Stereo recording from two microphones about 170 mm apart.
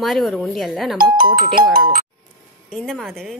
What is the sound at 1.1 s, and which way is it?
Speech, 60° right (ahead or behind).